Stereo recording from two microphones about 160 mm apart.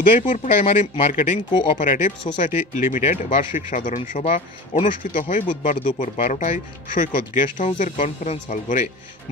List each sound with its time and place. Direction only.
0.3 s speech: 45° left (ahead or behind)
1.1 s speech: 50° left (ahead or behind)
1.5 s speech: 30° left (ahead or behind)
1.8 s speech: 50° left (ahead or behind)
4.8 s speech: 55° left (ahead or behind)